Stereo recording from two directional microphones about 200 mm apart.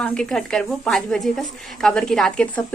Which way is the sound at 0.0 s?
5° left (ahead or behind).